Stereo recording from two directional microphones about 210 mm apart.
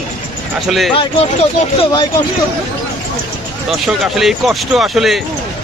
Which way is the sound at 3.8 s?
Centre (ahead or behind).